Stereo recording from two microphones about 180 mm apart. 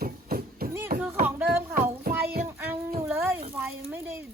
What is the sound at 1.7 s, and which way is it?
Child singing, 55° right (ahead or behind).